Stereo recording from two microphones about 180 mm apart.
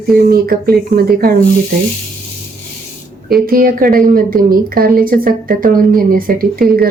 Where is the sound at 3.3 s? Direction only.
55° right (ahead or behind).